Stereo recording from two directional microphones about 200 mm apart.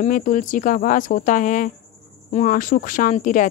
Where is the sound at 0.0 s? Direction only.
40° left (ahead or behind).